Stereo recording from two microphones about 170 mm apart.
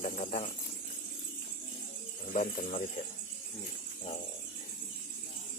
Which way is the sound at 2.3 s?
50° left (ahead or behind).